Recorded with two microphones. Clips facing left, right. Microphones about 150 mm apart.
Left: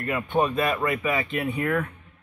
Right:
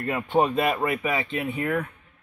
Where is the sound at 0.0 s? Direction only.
25° right (ahead or behind).